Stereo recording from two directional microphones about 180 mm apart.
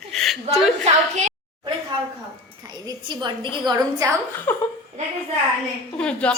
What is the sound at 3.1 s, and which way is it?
A woman's voice, 25° right (ahead or behind).